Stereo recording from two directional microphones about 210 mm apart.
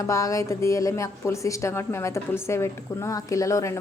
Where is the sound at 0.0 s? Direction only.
15° left (ahead or behind).